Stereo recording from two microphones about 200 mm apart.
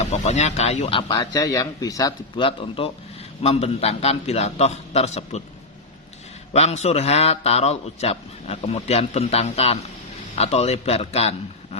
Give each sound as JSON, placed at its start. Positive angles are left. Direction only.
{"t": 0.0, "sound": "a man's voice", "side_deg": 35}
{"t": 6.5, "sound": "a man's voice", "side_deg": 35}